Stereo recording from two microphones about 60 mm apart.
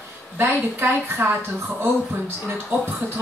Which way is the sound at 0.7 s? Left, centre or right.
Right.